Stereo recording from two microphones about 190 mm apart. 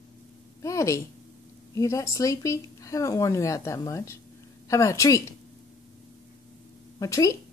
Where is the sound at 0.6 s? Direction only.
15° left (ahead or behind).